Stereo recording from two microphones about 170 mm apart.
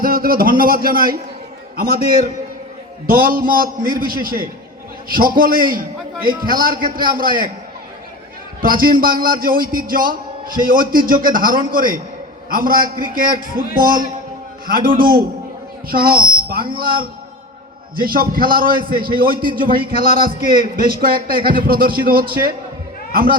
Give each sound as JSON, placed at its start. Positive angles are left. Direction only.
{"t": 0.0, "sound": "a man's voice", "side_deg": -60}
{"t": 8.6, "sound": "a man's voice", "side_deg": -55}